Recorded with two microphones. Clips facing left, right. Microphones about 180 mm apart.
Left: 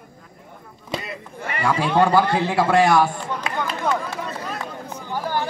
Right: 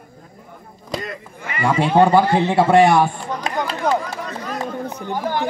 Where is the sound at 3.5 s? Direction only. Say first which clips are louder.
Right 4 dB; 35° right (ahead or behind).